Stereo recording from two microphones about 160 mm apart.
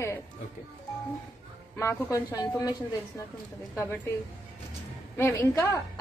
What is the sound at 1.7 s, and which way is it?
Speech, 20° left (ahead or behind).